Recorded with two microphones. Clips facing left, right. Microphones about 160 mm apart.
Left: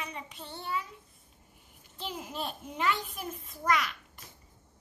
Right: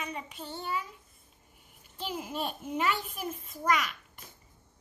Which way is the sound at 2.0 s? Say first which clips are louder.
Right 3 dB; 5° right (ahead or behind).